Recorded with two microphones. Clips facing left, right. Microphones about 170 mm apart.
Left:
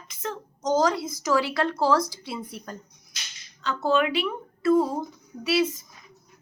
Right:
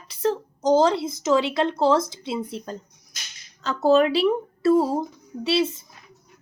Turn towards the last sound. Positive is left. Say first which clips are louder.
# right 1 dB
turn(degrees=-25)  # may be behind; listen again after turning